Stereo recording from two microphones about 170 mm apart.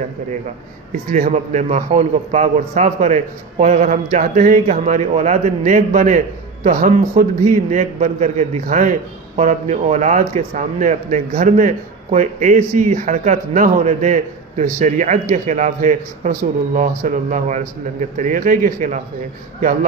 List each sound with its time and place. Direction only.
1.1 s speech: 45° right (ahead or behind)